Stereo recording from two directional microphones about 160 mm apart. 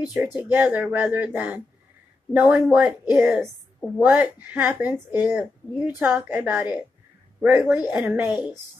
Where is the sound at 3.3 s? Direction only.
Centre (ahead or behind).